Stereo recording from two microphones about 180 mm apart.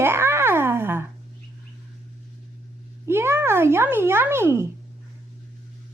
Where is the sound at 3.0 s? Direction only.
15° right (ahead or behind).